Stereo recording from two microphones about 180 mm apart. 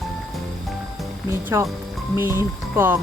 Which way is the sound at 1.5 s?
20° right (ahead or behind).